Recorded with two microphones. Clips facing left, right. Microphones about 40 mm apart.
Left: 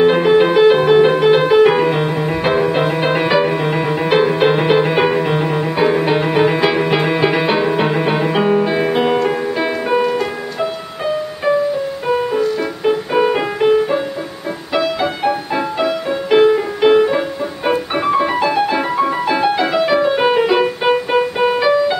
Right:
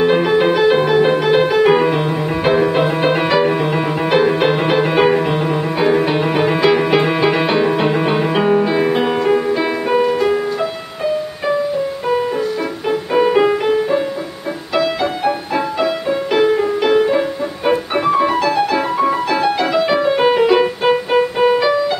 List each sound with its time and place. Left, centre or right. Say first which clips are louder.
0.0 s music: left 2 dB; centre
12.1 s music: left 2 dB; centre